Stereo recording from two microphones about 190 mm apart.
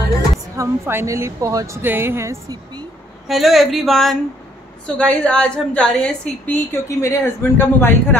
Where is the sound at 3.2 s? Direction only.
Centre (ahead or behind).